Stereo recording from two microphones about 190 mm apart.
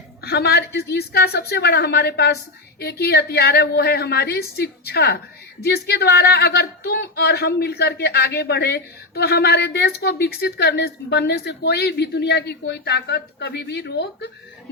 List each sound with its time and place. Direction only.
0.2 s speech: 55° left (ahead or behind)